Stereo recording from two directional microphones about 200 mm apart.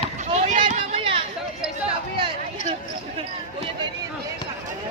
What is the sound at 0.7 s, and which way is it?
Children playing, 30° right (ahead or behind).